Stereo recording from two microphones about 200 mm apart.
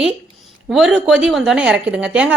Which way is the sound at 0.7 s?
5° right (ahead or behind).